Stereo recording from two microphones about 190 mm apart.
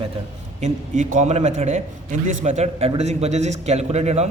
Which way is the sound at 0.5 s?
40° right (ahead or behind).